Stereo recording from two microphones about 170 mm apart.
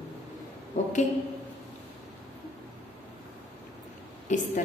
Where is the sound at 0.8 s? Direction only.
45° left (ahead or behind).